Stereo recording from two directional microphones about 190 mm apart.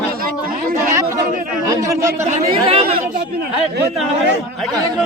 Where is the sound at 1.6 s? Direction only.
15° right (ahead or behind).